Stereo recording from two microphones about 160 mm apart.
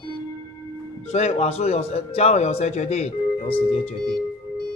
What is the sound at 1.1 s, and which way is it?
A man's voice, 45° left (ahead or behind).